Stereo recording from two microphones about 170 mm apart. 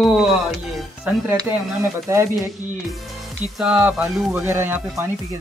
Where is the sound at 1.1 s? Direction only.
10° right (ahead or behind).